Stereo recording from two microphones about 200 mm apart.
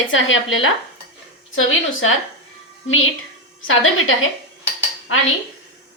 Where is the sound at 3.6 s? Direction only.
90° left.